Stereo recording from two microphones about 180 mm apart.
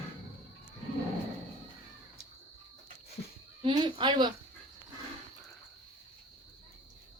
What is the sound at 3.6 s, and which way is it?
Speech, 25° right (ahead or behind).